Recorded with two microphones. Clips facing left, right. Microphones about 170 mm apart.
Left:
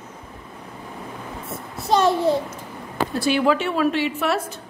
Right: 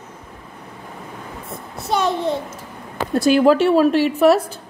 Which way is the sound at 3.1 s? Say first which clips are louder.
Right 7 dB; 45° right (ahead or behind).